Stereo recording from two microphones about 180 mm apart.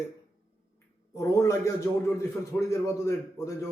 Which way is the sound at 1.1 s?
15° left (ahead or behind).